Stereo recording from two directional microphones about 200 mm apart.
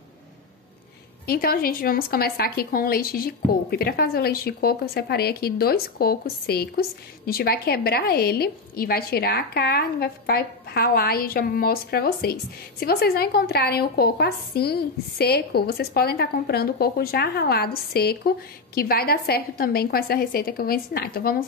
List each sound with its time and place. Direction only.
1.2 s a woman's voice: 50° left (ahead or behind)